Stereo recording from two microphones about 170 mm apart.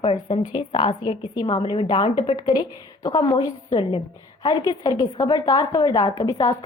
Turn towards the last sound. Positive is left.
turn(degrees=20)  # may be behind; listen again after turning